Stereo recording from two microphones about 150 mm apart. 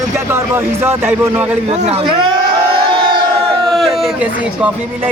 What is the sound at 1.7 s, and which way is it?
Speech, 50° right (ahead or behind).